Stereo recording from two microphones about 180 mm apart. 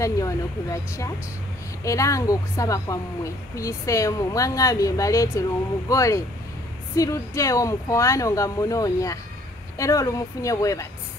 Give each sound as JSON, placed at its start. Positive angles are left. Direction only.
{"t": 0.0, "sound": "speech", "side_deg": 15}